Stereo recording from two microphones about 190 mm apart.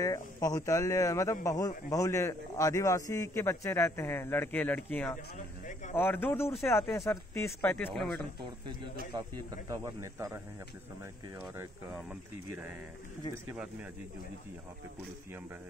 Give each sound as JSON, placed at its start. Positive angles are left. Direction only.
{"t": 0.0, "sound": "a man's voice", "side_deg": 20}
{"t": 9.1, "sound": "speech", "side_deg": -20}
{"t": 11.5, "sound": "speech", "side_deg": -5}